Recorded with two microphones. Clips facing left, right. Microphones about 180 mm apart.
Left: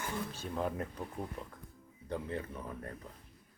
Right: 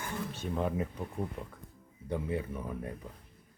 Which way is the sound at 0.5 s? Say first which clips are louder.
Right 3 dB; 5° right (ahead or behind).